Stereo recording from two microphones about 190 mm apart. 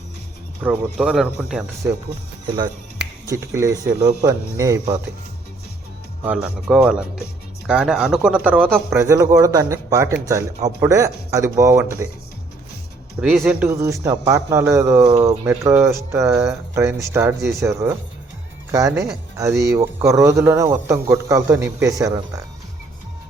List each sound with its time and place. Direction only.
0.6 s a man's voice: 10° right (ahead or behind)
3.2 s a man's voice: 15° right (ahead or behind)
6.2 s a man's voice: 5° right (ahead or behind)
13.1 s a man's voice: 10° right (ahead or behind)